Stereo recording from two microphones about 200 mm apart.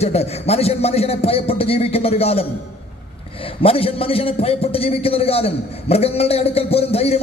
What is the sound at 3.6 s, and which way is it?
A man's voice, 30° left (ahead or behind).